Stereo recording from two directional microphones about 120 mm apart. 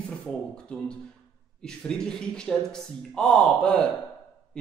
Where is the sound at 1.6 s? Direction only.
5° left (ahead or behind).